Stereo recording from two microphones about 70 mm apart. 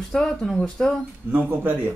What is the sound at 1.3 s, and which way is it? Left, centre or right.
Speech, right.